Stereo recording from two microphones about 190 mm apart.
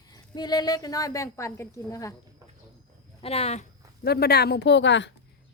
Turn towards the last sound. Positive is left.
turn(degrees=70)  # may be behind; listen again after turning